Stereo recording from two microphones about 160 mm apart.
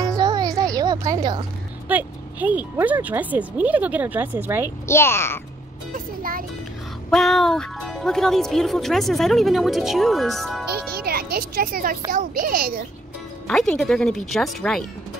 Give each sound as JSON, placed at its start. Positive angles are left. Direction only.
{"t": 0.0, "sound": "music", "side_deg": -20}
{"t": 1.9, "sound": "speech", "side_deg": -10}
{"t": 4.8, "sound": "a child's voice", "side_deg": 15}
{"t": 5.9, "sound": "a child's voice", "side_deg": -60}
{"t": 7.1, "sound": "speech", "side_deg": 0}
{"t": 11.1, "sound": "a child's voice", "side_deg": -70}
{"t": 13.5, "sound": "speech", "side_deg": 5}